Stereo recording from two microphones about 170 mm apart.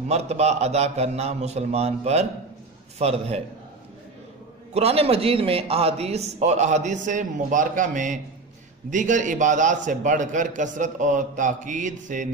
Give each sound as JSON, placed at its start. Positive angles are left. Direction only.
{"t": 0.1, "sound": "a man's voice", "side_deg": -40}
{"t": 4.7, "sound": "a man's voice", "side_deg": -35}